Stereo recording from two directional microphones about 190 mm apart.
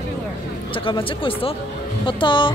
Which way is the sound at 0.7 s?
25° left (ahead or behind).